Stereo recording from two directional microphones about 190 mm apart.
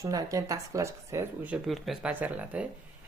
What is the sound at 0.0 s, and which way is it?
Speech, 15° right (ahead or behind).